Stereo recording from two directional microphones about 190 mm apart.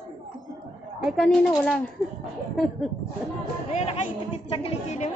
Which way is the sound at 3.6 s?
35° left (ahead or behind).